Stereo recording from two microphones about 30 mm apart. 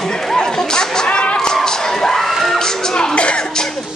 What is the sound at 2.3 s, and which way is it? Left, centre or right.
Music, centre.